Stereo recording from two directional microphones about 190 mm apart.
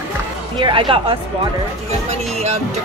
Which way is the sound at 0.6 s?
25° right (ahead or behind).